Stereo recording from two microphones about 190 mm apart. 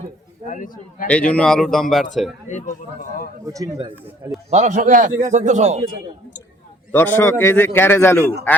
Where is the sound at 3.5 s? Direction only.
20° right (ahead or behind).